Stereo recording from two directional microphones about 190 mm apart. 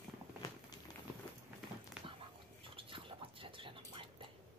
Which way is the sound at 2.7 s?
30° right (ahead or behind).